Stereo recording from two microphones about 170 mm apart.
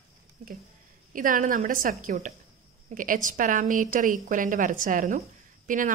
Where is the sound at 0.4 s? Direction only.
55° right (ahead or behind).